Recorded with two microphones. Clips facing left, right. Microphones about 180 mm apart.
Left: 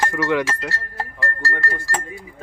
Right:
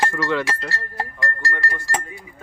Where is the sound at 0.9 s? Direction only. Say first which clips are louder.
Even; 15° right (ahead or behind).